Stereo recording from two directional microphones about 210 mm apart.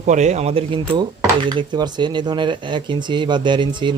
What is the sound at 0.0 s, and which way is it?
Speech, 35° right (ahead or behind).